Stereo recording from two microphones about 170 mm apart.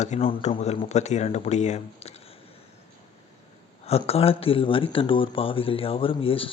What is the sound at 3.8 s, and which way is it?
Speech, 35° left (ahead or behind).